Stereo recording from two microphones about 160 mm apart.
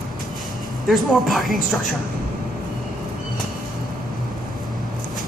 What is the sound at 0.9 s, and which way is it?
Speech, centre (ahead or behind).